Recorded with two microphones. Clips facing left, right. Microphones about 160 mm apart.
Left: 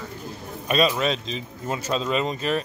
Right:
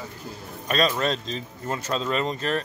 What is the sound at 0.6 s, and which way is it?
Speech, 10° left (ahead or behind).